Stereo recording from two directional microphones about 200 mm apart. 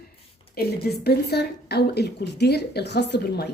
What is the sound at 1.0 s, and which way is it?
Speech, 55° left (ahead or behind).